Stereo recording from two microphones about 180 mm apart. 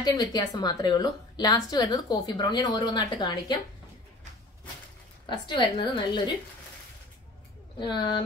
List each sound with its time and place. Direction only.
0.0 s speech: 20° left (ahead or behind)
5.2 s speech: 25° left (ahead or behind)
7.8 s speech: 25° left (ahead or behind)